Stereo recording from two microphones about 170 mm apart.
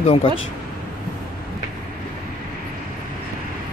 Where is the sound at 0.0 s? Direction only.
30° left (ahead or behind).